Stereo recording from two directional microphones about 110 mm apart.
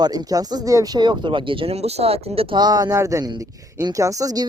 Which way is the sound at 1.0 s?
50° right (ahead or behind).